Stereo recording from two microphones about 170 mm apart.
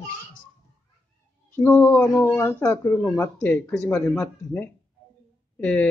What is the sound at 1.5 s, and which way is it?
Speech, 10° left (ahead or behind).